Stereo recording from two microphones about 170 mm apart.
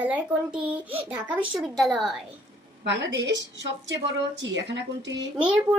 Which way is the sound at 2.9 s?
90° right.